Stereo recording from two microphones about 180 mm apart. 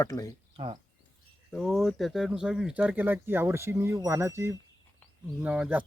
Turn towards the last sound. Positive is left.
turn(degrees=-5)  # may be behind; listen again after turning